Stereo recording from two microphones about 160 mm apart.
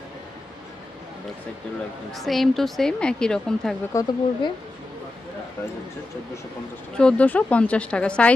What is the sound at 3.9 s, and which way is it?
Speech, 20° left (ahead or behind).